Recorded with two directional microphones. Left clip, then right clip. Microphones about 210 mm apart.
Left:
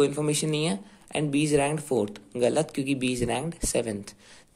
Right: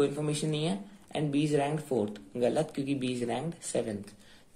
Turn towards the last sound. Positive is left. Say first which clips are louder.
# left 5 dB
turn(degrees=25)  # may be behind; listen again after turning